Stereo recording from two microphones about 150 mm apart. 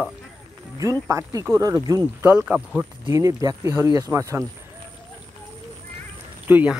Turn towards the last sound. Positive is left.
turn(degrees=-10)  # may be behind; listen again after turning